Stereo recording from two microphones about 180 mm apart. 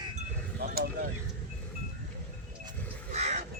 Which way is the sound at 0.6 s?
55° right (ahead or behind).